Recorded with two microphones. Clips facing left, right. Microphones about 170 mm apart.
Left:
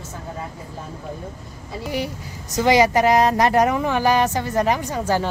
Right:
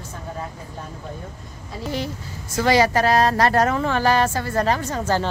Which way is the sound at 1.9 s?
15° left (ahead or behind).